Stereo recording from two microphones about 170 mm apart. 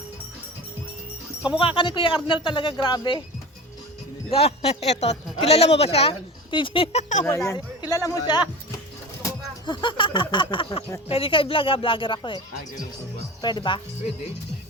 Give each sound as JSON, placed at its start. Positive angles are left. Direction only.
{"t": 1.5, "sound": "speech", "side_deg": 30}
{"t": 4.3, "sound": "speech", "side_deg": 35}
{"t": 7.3, "sound": "speech", "side_deg": 15}
{"t": 9.6, "sound": "speech", "side_deg": 25}